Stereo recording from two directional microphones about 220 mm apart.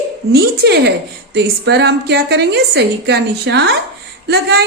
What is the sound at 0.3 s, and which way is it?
A woman's voice, 45° right (ahead or behind).